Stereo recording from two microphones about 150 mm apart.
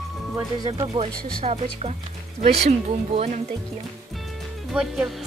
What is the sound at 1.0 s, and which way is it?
Speech, 45° right (ahead or behind).